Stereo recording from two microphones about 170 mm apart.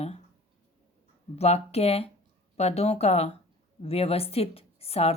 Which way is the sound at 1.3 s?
40° left (ahead or behind).